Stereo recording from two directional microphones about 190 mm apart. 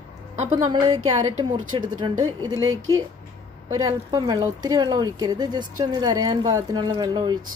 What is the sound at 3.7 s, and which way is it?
Speech, 20° right (ahead or behind).